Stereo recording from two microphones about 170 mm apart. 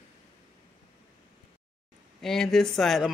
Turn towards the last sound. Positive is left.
turn(degrees=0)  # may be behind; listen again after turning